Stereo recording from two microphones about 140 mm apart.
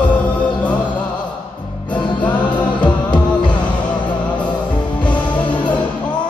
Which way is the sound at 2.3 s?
30° left (ahead or behind).